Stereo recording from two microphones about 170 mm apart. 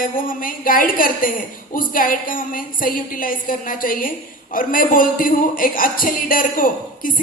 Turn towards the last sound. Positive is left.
turn(degrees=55)  # may be behind; listen again after turning